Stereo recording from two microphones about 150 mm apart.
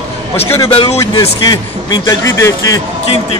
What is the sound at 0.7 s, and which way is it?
Speech, 40° left (ahead or behind).